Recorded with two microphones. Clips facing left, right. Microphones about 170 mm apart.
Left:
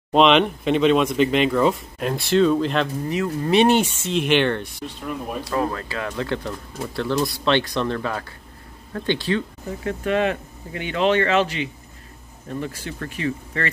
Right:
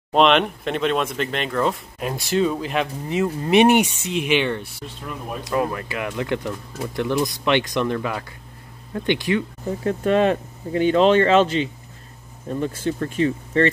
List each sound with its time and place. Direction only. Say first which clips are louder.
0.1 s speech: left 1 dB; centre (ahead or behind)
5.4 s speech: right 3 dB; 20° right (ahead or behind)
9.8 s speech: right 3 dB; 35° right (ahead or behind)